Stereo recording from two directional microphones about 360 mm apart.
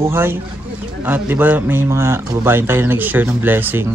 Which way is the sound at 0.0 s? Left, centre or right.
Centre.